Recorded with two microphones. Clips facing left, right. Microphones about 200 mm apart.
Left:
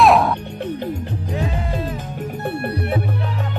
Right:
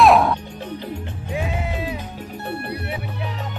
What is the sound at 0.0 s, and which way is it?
Music, centre (ahead or behind).